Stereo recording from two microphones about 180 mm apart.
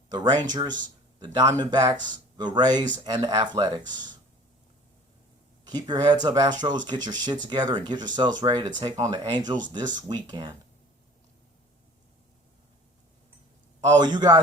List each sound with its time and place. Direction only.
0.1 s speech: 25° right (ahead or behind)
5.6 s speech: 20° right (ahead or behind)
14.0 s speech: 25° right (ahead or behind)